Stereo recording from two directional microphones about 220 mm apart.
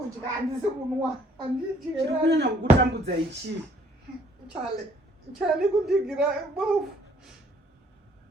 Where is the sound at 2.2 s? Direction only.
50° right (ahead or behind).